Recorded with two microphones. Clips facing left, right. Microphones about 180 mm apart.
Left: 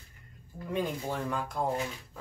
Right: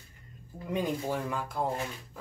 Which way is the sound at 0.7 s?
10° right (ahead or behind).